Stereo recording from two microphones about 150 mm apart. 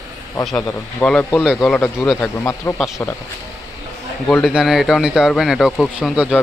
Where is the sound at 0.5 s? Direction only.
10° left (ahead or behind).